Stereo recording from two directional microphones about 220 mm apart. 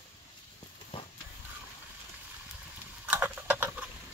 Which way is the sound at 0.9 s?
25° left (ahead or behind).